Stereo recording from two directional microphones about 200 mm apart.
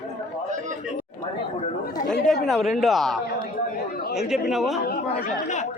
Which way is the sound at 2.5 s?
Centre (ahead or behind).